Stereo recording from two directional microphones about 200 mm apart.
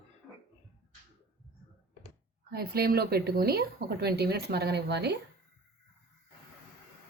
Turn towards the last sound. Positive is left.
turn(degrees=-55)  # may be behind; listen again after turning